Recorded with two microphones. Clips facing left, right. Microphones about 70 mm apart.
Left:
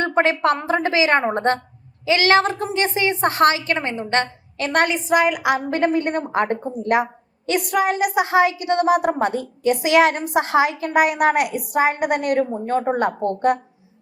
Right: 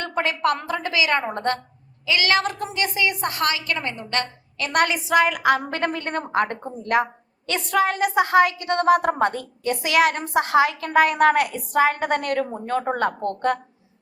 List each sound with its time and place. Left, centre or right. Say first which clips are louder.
0.0 s a woman's voice: left 5 dB; left
4.9 s a woman's voice: left 2 dB; centre
5.2 s a woman's voice: left 1 dB; centre; by 6.6 s left
6.8 s a sound: left 1 dB; left
7.8 s a woman's voice: right 1 dB; centre